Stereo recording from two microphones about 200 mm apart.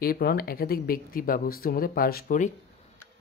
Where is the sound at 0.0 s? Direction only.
50° left (ahead or behind).